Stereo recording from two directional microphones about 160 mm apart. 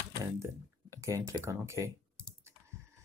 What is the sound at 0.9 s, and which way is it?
Speech, 20° right (ahead or behind).